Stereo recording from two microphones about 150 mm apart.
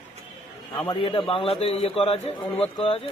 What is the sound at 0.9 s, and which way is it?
A man's voice, 35° left (ahead or behind).